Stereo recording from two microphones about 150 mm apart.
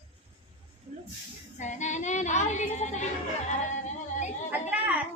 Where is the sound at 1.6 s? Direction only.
55° left (ahead or behind).